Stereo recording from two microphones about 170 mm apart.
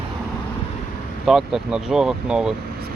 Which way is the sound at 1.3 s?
5° right (ahead or behind).